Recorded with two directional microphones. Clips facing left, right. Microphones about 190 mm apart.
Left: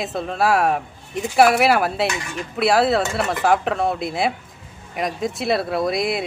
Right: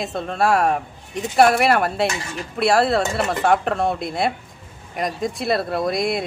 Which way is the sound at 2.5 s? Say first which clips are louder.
Even; centre (ahead or behind).